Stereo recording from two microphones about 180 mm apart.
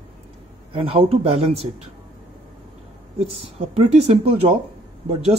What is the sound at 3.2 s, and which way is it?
A man's voice, 35° right (ahead or behind).